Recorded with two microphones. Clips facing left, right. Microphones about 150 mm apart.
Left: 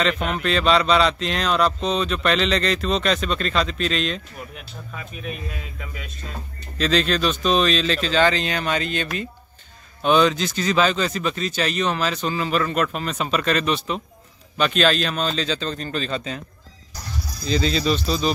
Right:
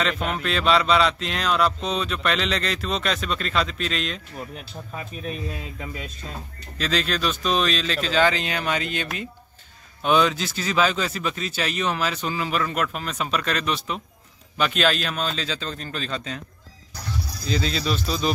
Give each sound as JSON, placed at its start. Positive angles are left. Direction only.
{"t": 0.0, "sound": "speech", "side_deg": -5}
{"t": 4.6, "sound": "speech", "side_deg": -35}
{"t": 6.8, "sound": "speech", "side_deg": -5}
{"t": 17.5, "sound": "speech", "side_deg": 0}